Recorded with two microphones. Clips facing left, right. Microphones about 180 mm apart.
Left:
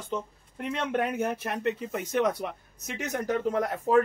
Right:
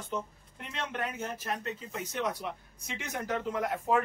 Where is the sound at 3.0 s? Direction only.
40° left (ahead or behind).